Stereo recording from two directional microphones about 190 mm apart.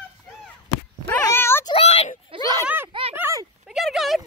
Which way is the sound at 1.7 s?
30° left (ahead or behind).